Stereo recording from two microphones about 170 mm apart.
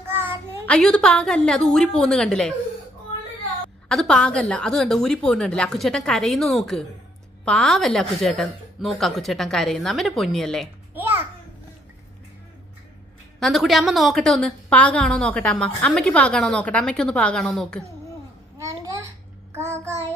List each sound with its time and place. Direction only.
0.7 s a woman's voice: 5° left (ahead or behind)
3.9 s a woman's voice: 5° left (ahead or behind)
13.4 s a woman's voice: centre (ahead or behind)
18.6 s a sound: 20° right (ahead or behind)
19.5 s child singing: 15° right (ahead or behind)